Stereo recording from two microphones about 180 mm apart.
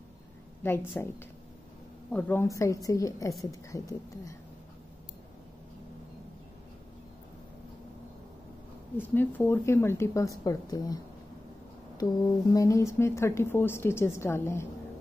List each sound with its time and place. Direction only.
0.6 s speech: 10° left (ahead or behind)
2.1 s speech: 10° left (ahead or behind)
8.9 s a woman's voice: 10° left (ahead or behind)
12.0 s speech: 20° left (ahead or behind)